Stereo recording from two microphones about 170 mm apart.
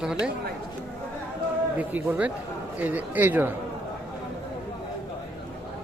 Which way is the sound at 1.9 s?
10° right (ahead or behind).